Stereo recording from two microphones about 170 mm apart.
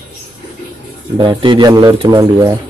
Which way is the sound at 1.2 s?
30° right (ahead or behind).